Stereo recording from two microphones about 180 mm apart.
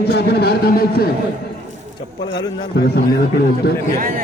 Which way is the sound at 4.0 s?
50° right (ahead or behind).